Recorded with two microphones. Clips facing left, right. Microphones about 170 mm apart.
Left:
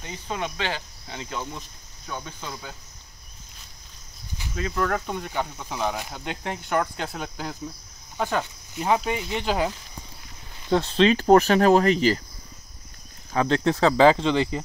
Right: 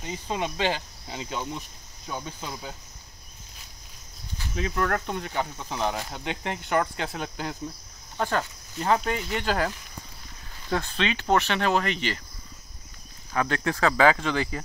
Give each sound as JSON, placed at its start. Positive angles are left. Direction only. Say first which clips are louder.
{"t": 0.0, "sound": "speech", "louder": "right 1 dB", "side_deg": -15}
{"t": 4.6, "sound": "speech", "louder": "left 1 dB", "side_deg": -5}
{"t": 10.7, "sound": "speech", "louder": "left 8 dB", "side_deg": 25}
{"t": 11.1, "sound": "speech", "louder": "left 8 dB", "side_deg": 35}
{"t": 13.3, "sound": "speech", "louder": "left 5 dB", "side_deg": 25}